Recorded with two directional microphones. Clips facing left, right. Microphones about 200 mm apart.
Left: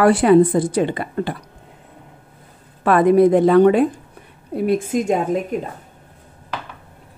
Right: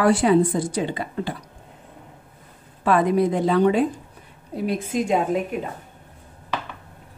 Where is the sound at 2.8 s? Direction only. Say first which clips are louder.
Left 6 dB; 60° left (ahead or behind); by 5.7 s 45° left (ahead or behind).